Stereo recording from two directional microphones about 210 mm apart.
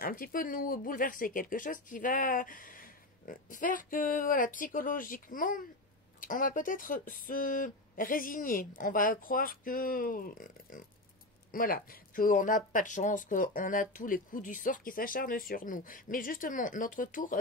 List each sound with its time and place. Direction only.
0.0 s speech: 45° left (ahead or behind)